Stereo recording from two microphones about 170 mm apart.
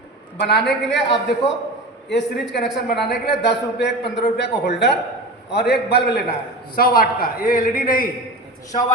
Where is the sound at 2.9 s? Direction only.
70° left (ahead or behind).